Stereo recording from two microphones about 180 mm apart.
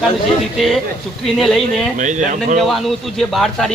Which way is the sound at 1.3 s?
Centre (ahead or behind).